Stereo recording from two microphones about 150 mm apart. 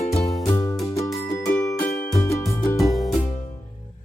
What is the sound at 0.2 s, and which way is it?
Music, centre (ahead or behind).